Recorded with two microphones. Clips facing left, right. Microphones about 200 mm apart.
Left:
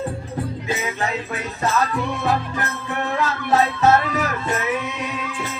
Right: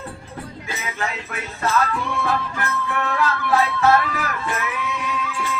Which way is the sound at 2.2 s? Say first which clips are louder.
Left 2 dB; 20° left (ahead or behind).